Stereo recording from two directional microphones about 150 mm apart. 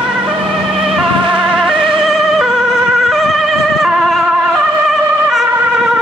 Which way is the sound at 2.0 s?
Centre (ahead or behind).